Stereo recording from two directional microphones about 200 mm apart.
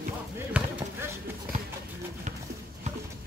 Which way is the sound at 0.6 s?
5° right (ahead or behind).